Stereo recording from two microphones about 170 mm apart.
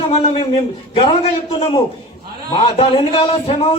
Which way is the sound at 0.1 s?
35° left (ahead or behind).